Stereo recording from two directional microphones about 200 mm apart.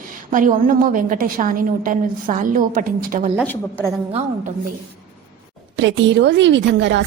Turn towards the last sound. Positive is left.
turn(degrees=-60)  # may be behind; listen again after turning